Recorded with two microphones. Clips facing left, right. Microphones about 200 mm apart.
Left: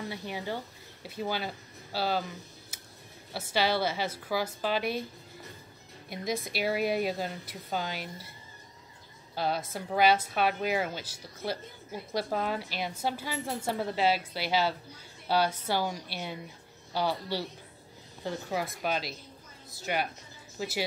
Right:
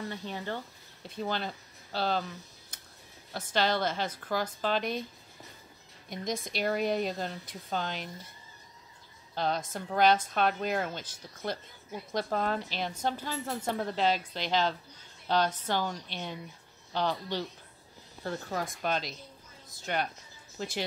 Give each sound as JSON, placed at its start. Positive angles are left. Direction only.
{"t": 0.1, "sound": "a woman's voice", "side_deg": 10}
{"t": 2.7, "sound": "a sound", "side_deg": 5}
{"t": 3.3, "sound": "a woman's voice", "side_deg": 10}
{"t": 6.0, "sound": "a woman's voice", "side_deg": 5}
{"t": 9.3, "sound": "a woman's voice", "side_deg": 5}